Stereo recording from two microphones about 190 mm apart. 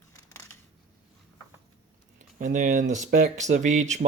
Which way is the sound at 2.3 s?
40° right (ahead or behind).